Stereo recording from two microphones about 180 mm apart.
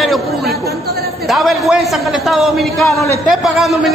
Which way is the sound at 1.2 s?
Centre (ahead or behind).